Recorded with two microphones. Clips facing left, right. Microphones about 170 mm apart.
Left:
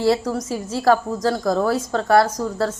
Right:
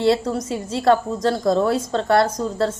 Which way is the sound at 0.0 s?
25° right (ahead or behind).